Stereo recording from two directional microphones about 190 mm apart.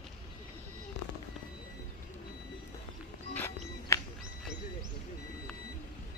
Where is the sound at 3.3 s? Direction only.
10° left (ahead or behind).